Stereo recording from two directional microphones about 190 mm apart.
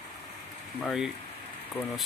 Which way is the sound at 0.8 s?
5° right (ahead or behind).